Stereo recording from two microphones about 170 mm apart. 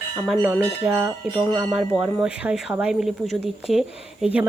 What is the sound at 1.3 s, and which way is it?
Speech, 25° right (ahead or behind).